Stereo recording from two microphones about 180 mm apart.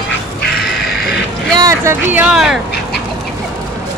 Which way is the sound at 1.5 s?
20° right (ahead or behind).